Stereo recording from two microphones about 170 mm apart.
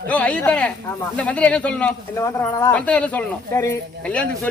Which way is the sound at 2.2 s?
20° left (ahead or behind).